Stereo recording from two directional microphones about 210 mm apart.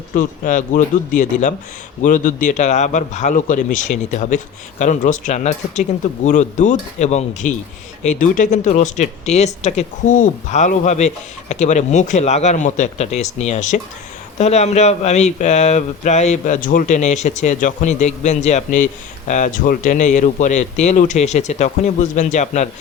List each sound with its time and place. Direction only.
0.1 s speech: 40° left (ahead or behind)